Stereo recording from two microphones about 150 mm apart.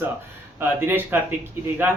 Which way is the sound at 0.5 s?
15° right (ahead or behind).